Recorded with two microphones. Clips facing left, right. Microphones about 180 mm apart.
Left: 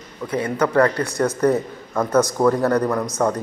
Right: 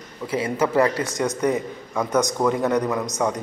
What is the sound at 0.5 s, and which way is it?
Speech, 5° right (ahead or behind).